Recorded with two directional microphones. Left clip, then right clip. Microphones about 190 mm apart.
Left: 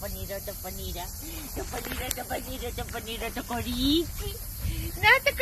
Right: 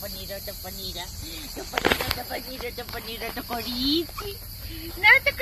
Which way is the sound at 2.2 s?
Centre (ahead or behind).